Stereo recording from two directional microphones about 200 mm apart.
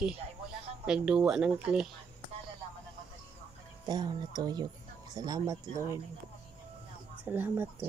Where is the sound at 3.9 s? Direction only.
20° right (ahead or behind).